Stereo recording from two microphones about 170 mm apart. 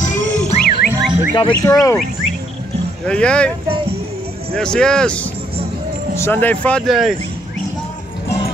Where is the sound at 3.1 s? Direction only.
5° left (ahead or behind).